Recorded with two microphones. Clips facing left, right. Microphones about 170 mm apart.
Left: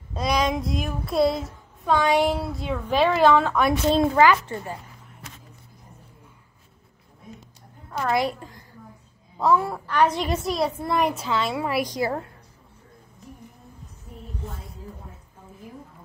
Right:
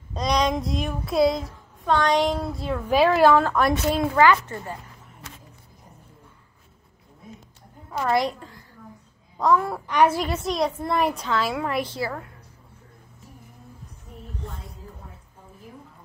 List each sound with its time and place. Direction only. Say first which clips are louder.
0.1 s child singing: right 1 dB; 5° left (ahead or behind)
3.9 s a woman's voice: left 2 dB; 25° left (ahead or behind)
7.9 s child singing: right 1 dB; centre (ahead or behind)
9.4 s child singing: even; 5° left (ahead or behind)
9.8 s a woman's voice: right 2 dB; 10° right (ahead or behind)
10.4 s child singing: even; centre (ahead or behind)
14.4 s a sound: even; centre (ahead or behind)